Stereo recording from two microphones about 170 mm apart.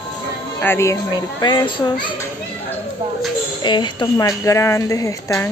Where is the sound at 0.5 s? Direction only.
15° left (ahead or behind).